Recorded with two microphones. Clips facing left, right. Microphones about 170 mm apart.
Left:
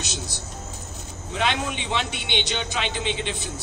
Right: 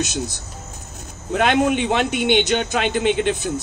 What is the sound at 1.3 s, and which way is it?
A man's voice, 55° right (ahead or behind).